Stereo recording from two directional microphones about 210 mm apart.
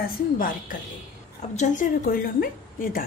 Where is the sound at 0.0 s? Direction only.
40° left (ahead or behind).